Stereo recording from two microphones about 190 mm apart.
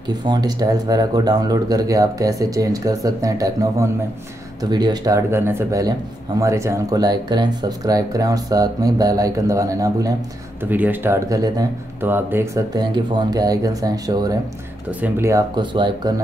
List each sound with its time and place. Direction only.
0.3 s speech: 20° right (ahead or behind)
14.9 s speech: 10° right (ahead or behind); by 16.2 s 25° right (ahead or behind)